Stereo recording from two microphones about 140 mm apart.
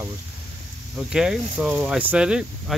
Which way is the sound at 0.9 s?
5° right (ahead or behind).